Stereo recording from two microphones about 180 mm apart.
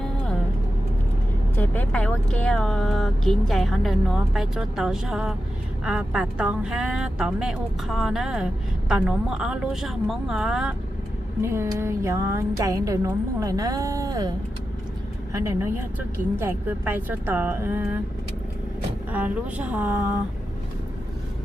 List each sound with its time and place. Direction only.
1.5 s speech: 10° left (ahead or behind)
11.4 s speech: 15° right (ahead or behind)
19.1 s speech: 10° right (ahead or behind)